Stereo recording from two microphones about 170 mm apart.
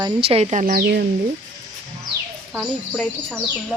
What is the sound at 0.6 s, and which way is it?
Speech, 65° right (ahead or behind).